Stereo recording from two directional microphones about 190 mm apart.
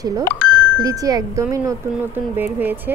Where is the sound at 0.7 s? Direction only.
20° right (ahead or behind).